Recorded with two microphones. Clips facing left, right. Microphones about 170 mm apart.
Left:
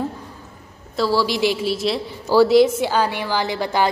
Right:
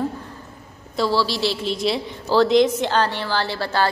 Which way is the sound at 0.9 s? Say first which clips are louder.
Left 1 dB; 5° left (ahead or behind).